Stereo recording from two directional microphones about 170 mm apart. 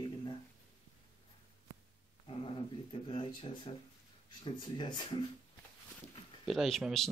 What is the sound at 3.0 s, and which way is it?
Speech, 30° left (ahead or behind).